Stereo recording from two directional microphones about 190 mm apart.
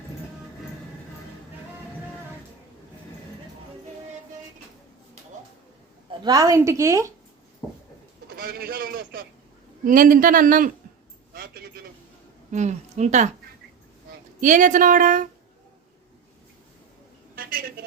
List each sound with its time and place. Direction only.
6.1 s a woman's voice: 20° right (ahead or behind)
8.4 s a man's voice: 50° right (ahead or behind)
11.3 s a sound: 50° right (ahead or behind)
12.5 s a woman's voice: 35° right (ahead or behind)
14.4 s a man's voice: 40° right (ahead or behind)
17.3 s a sound: 50° right (ahead or behind)